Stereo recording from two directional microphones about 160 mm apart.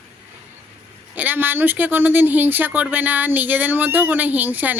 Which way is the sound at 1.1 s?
10° right (ahead or behind).